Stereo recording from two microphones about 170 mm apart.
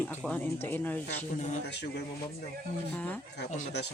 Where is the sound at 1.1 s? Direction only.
40° left (ahead or behind).